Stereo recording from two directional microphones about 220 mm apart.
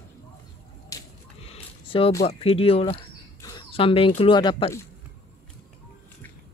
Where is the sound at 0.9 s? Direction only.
15° left (ahead or behind).